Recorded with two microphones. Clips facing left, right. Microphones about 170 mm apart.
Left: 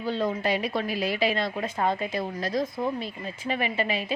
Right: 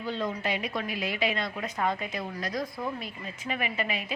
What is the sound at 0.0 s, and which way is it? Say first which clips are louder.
A woman's voice: left 4 dB; 35° left (ahead or behind).